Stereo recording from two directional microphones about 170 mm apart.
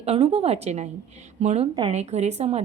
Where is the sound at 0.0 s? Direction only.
35° right (ahead or behind).